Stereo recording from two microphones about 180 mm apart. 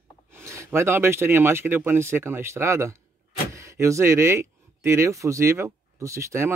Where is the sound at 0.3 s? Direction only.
15° right (ahead or behind).